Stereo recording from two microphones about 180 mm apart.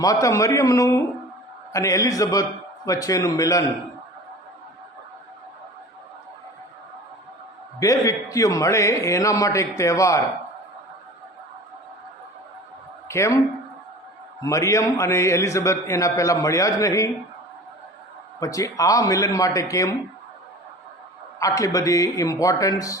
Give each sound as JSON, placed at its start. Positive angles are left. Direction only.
{"t": 0.0, "sound": "a man's voice", "side_deg": 20}
{"t": 7.8, "sound": "a man's voice", "side_deg": 20}
{"t": 13.1, "sound": "a woman's voice", "side_deg": 15}
{"t": 14.4, "sound": "a man's voice", "side_deg": 15}
{"t": 18.3, "sound": "a man's voice", "side_deg": 20}
{"t": 21.3, "sound": "a man's voice", "side_deg": 20}